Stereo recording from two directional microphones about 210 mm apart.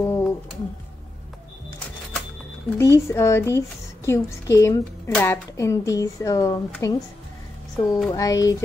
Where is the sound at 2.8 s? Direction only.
15° left (ahead or behind).